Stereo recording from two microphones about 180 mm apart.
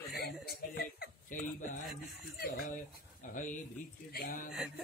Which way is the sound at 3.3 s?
45° left (ahead or behind).